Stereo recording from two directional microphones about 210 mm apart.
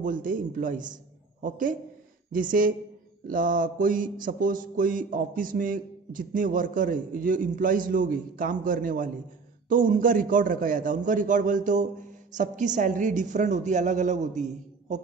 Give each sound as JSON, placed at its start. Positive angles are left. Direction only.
{"t": 0.0, "sound": "mantra", "side_deg": -40}